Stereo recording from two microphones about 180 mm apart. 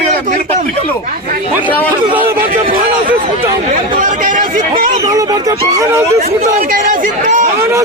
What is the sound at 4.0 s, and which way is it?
Speech, 45° right (ahead or behind).